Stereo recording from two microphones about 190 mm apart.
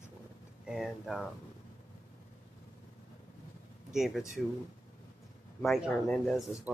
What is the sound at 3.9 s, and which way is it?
Speech, centre (ahead or behind).